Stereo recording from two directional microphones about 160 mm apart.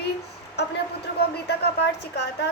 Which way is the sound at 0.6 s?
90° left.